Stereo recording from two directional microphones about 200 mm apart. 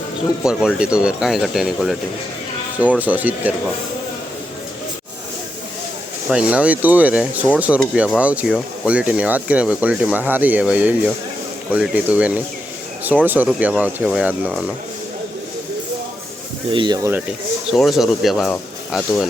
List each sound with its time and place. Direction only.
0.4 s speech: 5° right (ahead or behind)
6.3 s speech: 5° right (ahead or behind)
16.7 s speech: 20° right (ahead or behind)
17.7 s speech: centre (ahead or behind)